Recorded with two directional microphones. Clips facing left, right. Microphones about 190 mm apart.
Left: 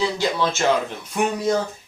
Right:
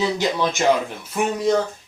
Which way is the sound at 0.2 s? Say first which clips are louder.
Right 1 dB; 15° right (ahead or behind).